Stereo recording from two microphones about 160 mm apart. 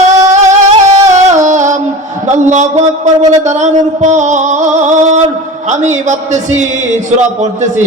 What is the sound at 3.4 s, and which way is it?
Music, 45° right (ahead or behind).